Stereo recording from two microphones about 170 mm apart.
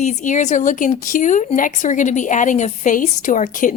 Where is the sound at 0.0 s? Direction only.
45° left (ahead or behind).